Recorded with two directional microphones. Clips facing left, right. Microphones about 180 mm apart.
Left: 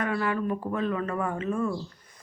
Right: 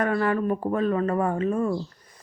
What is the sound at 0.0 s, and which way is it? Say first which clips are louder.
Speech: right 4 dB; 45° right (ahead or behind).